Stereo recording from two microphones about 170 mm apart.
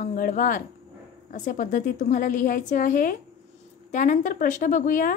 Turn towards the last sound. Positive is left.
turn(degrees=50)  # may be behind; listen again after turning